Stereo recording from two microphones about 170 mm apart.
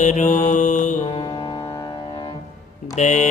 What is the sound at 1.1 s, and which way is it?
Music, 30° left (ahead or behind).